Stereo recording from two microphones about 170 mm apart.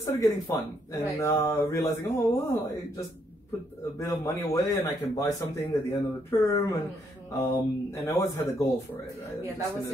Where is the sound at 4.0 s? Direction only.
20° left (ahead or behind).